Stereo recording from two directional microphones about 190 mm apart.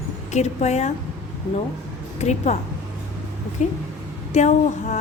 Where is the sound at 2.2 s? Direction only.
35° left (ahead or behind).